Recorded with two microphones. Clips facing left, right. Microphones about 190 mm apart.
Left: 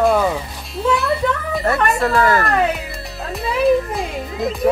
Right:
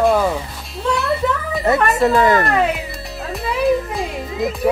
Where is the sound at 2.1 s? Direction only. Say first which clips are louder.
Right 1 dB; 20° right (ahead or behind).